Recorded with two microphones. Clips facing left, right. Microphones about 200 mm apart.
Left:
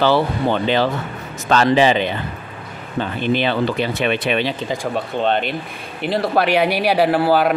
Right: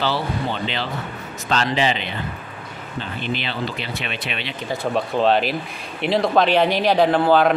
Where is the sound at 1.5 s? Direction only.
55° left (ahead or behind).